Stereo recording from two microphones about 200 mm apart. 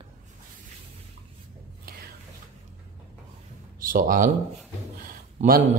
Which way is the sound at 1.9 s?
50° right (ahead or behind).